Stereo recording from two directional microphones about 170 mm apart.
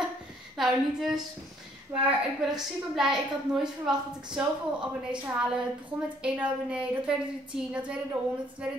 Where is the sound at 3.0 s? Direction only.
5° right (ahead or behind).